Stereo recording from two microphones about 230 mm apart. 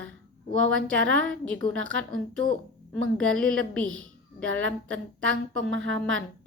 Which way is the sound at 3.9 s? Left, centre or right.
Right.